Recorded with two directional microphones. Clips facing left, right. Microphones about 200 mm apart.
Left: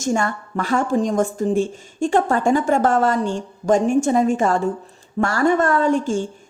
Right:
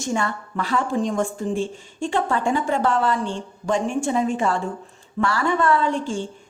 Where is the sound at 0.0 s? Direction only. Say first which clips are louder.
Left 4 dB; 45° left (ahead or behind).